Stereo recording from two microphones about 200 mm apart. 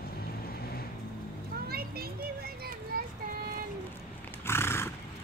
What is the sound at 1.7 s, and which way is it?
Children playing, 50° right (ahead or behind).